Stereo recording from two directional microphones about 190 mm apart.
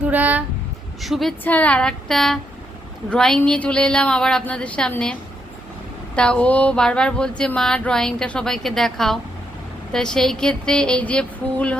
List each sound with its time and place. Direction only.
0.0 s female singing: 10° right (ahead or behind)
1.0 s speech: centre (ahead or behind)
6.1 s speech: 5° left (ahead or behind)